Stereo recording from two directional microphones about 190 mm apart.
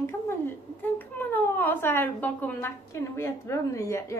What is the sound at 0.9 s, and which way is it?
Speech, 10° left (ahead or behind).